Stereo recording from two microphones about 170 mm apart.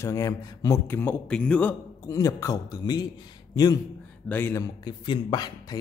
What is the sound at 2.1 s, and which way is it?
Speech, 20° left (ahead or behind).